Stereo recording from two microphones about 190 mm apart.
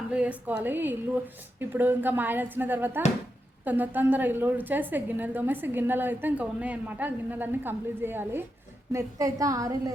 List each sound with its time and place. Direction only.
0.1 s a woman's voice: 5° right (ahead or behind)